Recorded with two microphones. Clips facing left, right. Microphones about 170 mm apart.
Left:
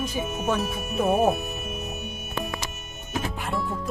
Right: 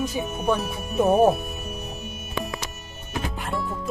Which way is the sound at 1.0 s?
20° right (ahead or behind).